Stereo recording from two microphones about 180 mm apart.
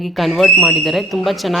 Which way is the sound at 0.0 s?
Centre (ahead or behind).